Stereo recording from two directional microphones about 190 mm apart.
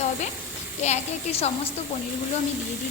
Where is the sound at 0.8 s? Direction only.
35° left (ahead or behind).